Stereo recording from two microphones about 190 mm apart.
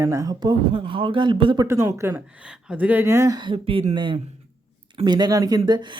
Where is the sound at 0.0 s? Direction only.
15° right (ahead or behind).